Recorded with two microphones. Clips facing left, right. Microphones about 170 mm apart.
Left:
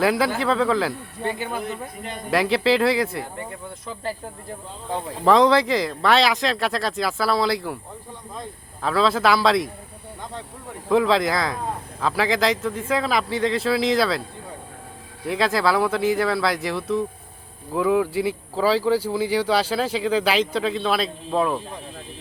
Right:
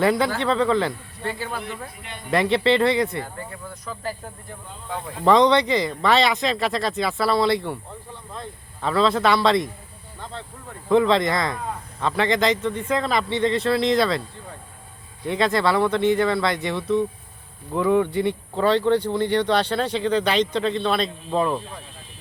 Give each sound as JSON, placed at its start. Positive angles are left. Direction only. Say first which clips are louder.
{"t": 0.0, "sound": "speech", "louder": "even", "side_deg": 0}
{"t": 1.2, "sound": "speech", "louder": "left 2 dB", "side_deg": 20}
{"t": 1.5, "sound": "speech", "louder": "left 3 dB", "side_deg": 45}
{"t": 2.3, "sound": "speech", "louder": "even", "side_deg": 0}
{"t": 5.2, "sound": "speech", "louder": "even", "side_deg": 0}
{"t": 8.8, "sound": "speech", "louder": "even", "side_deg": 0}
{"t": 10.8, "sound": "speech", "louder": "right 1 dB", "side_deg": 0}
{"t": 15.3, "sound": "speech", "louder": "even", "side_deg": 0}